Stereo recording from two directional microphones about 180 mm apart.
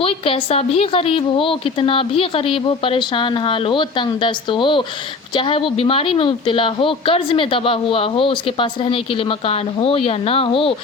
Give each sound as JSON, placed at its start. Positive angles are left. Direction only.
{"t": 0.0, "sound": "a woman's voice", "side_deg": 30}